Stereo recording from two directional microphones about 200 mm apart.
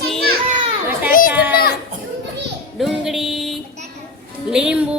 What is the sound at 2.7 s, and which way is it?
A woman's voice, centre (ahead or behind).